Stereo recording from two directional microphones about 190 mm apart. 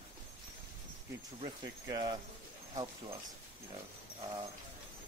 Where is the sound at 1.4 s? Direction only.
20° right (ahead or behind).